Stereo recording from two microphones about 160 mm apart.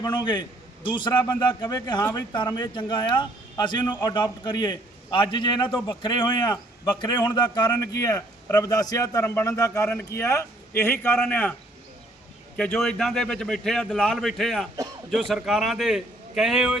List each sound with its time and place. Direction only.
0.0 s a man's voice: 25° left (ahead or behind); by 11.5 s 10° left (ahead or behind)
12.5 s a man's voice: 5° left (ahead or behind)